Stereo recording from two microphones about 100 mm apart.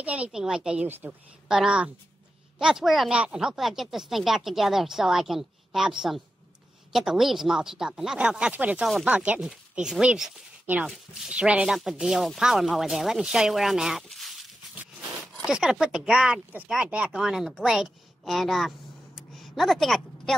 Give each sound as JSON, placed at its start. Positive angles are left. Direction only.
{"t": 0.0, "sound": "speech", "side_deg": -15}
{"t": 0.8, "sound": "speech", "side_deg": -20}
{"t": 1.5, "sound": "speech", "side_deg": -10}
{"t": 14.0, "sound": "a sound", "side_deg": 0}
{"t": 15.4, "sound": "speech", "side_deg": -5}
{"t": 19.1, "sound": "a sound", "side_deg": 0}